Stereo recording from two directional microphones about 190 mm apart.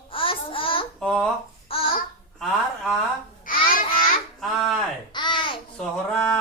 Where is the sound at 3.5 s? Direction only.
45° left (ahead or behind).